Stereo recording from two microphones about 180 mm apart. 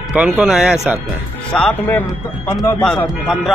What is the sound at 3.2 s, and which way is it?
Speech, centre (ahead or behind).